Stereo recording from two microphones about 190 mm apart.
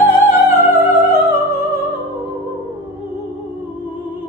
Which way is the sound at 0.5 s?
15° right (ahead or behind).